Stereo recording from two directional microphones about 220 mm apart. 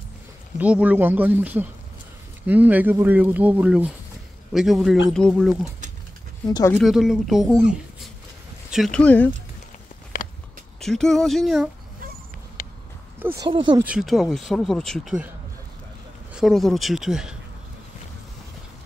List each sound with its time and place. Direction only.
0.6 s speech: 5° right (ahead or behind)
6.4 s speech: 15° left (ahead or behind)
6.8 s speech: centre (ahead or behind)
10.8 s speech: centre (ahead or behind)
13.2 s speech: 10° right (ahead or behind)
13.8 s speech: centre (ahead or behind)
16.3 s speech: centre (ahead or behind)